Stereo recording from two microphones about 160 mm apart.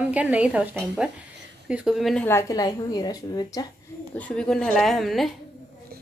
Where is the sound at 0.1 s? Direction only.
10° right (ahead or behind).